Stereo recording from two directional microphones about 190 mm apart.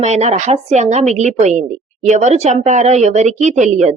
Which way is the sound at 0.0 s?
35° right (ahead or behind).